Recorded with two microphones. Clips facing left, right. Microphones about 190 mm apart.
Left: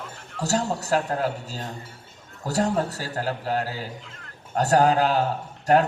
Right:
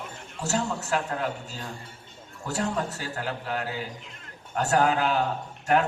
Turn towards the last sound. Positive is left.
turn(degrees=40)  # may be behind; listen again after turning